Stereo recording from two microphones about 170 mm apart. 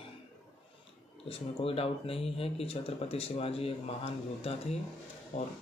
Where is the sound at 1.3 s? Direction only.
35° left (ahead or behind).